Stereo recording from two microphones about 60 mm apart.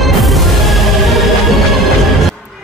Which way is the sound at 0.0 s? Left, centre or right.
Centre.